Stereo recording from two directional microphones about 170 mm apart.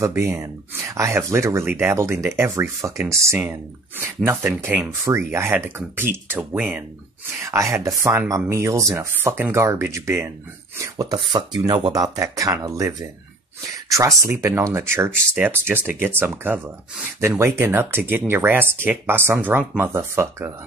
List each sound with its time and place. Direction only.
0.0 s speech: 15° right (ahead or behind)